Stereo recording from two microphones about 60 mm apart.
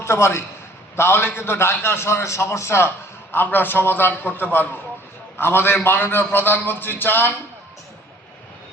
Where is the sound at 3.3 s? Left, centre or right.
Left.